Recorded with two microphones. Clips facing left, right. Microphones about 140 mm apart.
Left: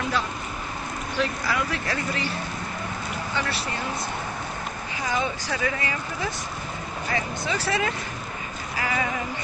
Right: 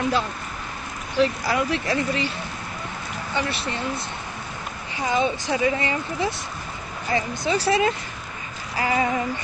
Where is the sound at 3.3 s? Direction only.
20° right (ahead or behind).